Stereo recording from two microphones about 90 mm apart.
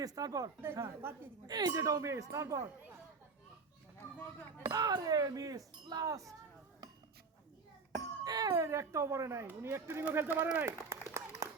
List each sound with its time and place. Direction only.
0.0 s speech: 45° right (ahead or behind)
0.6 s speech: 30° right (ahead or behind)
1.5 s speech: 50° right (ahead or behind)
4.6 s speech: 40° right (ahead or behind)
8.2 s speech: 40° right (ahead or behind); by 10.7 s 25° right (ahead or behind)
10.7 s clapping: 30° right (ahead or behind)